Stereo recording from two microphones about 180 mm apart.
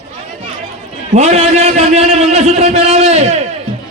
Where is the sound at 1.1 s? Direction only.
35° right (ahead or behind).